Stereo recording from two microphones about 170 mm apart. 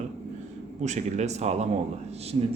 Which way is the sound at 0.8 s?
45° right (ahead or behind).